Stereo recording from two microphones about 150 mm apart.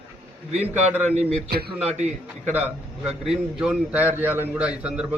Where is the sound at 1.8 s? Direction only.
50° right (ahead or behind).